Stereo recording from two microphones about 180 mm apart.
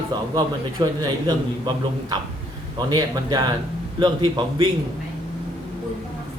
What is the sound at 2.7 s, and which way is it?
A man's voice, 25° right (ahead or behind).